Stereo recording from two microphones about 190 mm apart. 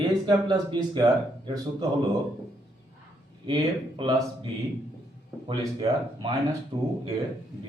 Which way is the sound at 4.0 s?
20° right (ahead or behind).